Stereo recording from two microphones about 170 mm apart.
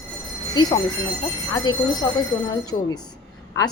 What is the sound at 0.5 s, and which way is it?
A woman's voice, 25° left (ahead or behind).